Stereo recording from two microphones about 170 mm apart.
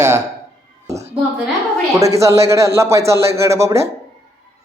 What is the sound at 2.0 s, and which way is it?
A man's voice, 20° right (ahead or behind).